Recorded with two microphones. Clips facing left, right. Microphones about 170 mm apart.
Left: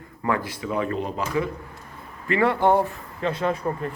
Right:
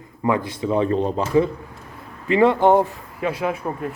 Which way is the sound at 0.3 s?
20° right (ahead or behind).